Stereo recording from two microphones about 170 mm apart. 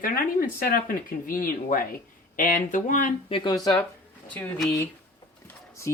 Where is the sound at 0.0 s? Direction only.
55° left (ahead or behind).